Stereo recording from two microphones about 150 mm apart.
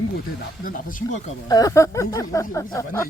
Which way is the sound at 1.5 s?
25° left (ahead or behind).